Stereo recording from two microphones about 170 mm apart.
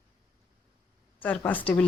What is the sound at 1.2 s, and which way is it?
Speech, 10° left (ahead or behind).